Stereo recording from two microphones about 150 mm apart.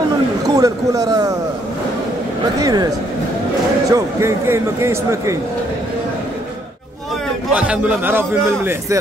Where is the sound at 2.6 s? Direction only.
25° right (ahead or behind).